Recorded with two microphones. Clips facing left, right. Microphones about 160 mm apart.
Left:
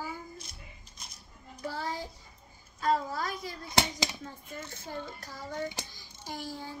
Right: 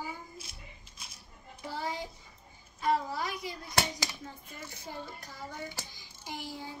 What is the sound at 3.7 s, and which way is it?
Speech, 20° left (ahead or behind).